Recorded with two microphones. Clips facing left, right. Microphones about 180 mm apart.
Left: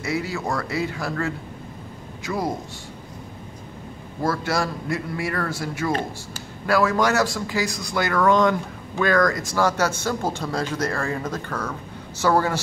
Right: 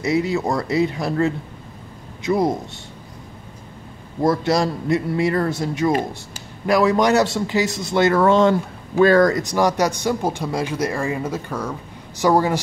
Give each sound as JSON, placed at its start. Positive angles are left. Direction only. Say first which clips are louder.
{"t": 0.0, "sound": "a man's voice", "louder": "right 6 dB", "side_deg": -20}
{"t": 4.2, "sound": "a man's voice", "louder": "right 6 dB", "side_deg": -20}